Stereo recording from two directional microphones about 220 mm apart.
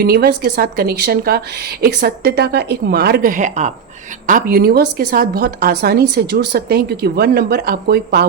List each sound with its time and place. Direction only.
0.0 s speech: 45° right (ahead or behind)